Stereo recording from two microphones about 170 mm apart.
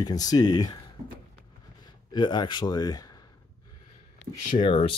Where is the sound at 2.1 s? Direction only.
25° left (ahead or behind).